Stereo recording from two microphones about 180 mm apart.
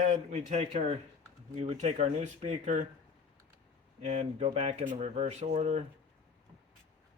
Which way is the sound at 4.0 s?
35° right (ahead or behind).